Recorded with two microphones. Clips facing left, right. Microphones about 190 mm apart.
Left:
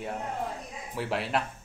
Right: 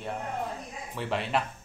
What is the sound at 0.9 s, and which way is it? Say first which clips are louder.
Speech: even; 5° left (ahead or behind).